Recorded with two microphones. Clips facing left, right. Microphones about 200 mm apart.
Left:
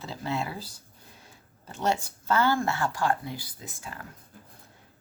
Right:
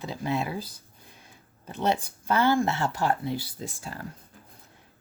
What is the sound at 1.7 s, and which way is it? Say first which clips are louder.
Speech: right 1 dB; 20° right (ahead or behind).